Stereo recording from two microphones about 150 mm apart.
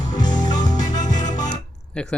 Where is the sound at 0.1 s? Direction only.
25° left (ahead or behind).